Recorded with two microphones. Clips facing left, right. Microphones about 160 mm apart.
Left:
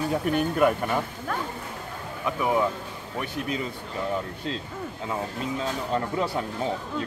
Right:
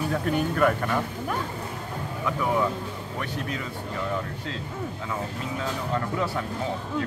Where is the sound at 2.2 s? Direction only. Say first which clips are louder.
Left 1 dB; 20° left (ahead or behind).